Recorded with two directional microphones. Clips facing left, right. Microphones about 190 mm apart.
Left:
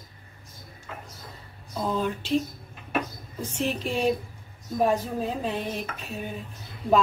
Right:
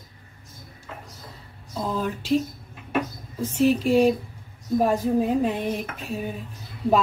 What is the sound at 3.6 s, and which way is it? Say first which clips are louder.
A woman's voice: right 9 dB; 10° right (ahead or behind).